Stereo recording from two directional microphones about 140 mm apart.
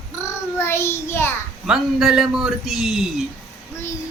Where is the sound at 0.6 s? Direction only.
20° left (ahead or behind).